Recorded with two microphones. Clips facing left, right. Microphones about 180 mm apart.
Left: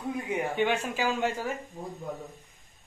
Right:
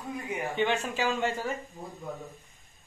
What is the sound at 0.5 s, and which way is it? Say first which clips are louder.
Speech: right 1 dB; 10° left (ahead or behind).